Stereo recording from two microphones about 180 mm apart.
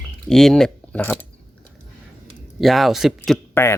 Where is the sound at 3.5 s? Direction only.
15° left (ahead or behind).